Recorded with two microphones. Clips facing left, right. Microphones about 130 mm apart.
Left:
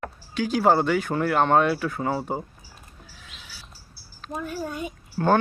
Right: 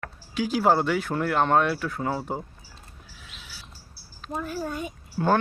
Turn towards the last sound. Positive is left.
turn(degrees=0)  # may be behind; listen again after turning